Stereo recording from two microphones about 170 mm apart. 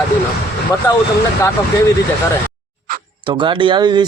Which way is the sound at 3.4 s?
30° right (ahead or behind).